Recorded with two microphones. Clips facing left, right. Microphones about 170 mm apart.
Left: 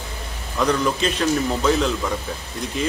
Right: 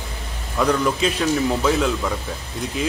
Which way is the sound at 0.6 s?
5° right (ahead or behind).